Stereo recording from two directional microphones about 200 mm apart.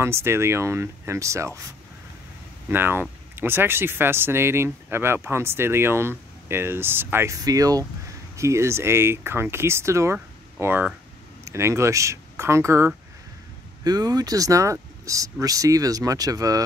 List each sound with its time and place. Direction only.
0.0 s speech: 10° right (ahead or behind)
2.7 s speech: 10° right (ahead or behind)